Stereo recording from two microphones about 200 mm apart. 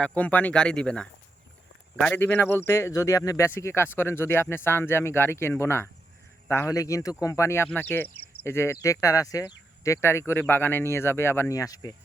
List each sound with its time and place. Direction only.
0.0 s speech: 5° left (ahead or behind)